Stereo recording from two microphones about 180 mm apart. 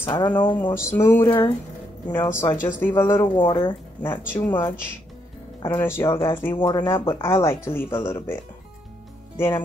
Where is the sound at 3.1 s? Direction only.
25° left (ahead or behind).